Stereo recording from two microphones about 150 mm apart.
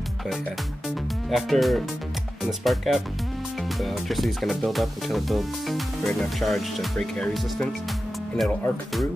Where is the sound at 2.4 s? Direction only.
Centre (ahead or behind).